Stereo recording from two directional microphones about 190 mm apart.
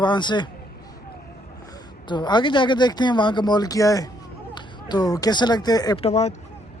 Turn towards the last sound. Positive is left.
turn(degrees=35)  # may be behind; listen again after turning